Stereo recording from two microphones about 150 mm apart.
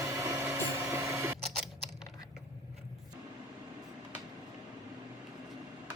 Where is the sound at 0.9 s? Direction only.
20° right (ahead or behind).